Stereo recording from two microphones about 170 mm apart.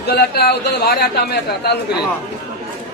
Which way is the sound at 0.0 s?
70° left (ahead or behind).